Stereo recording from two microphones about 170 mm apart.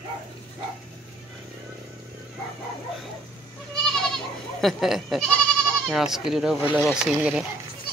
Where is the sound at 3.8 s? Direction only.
Centre (ahead or behind).